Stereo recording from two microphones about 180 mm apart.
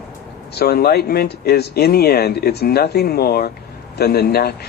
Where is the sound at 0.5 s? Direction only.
60° left (ahead or behind).